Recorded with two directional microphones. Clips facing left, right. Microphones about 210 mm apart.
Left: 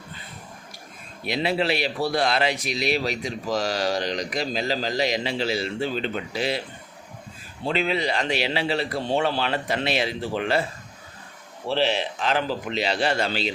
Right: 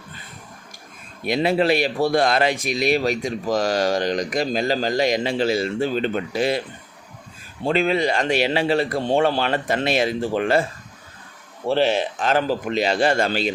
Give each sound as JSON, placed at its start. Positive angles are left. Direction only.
{"t": 1.2, "sound": "speech", "side_deg": -45}
{"t": 7.6, "sound": "speech", "side_deg": -50}
{"t": 11.7, "sound": "speech", "side_deg": -50}